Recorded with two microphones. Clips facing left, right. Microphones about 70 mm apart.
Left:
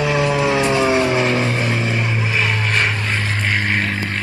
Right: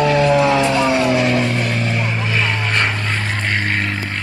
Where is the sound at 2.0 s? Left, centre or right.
Centre.